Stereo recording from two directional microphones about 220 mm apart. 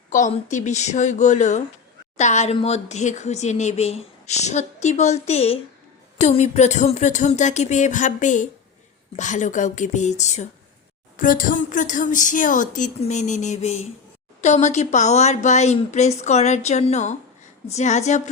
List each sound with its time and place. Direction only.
0.1 s speech: 35° left (ahead or behind)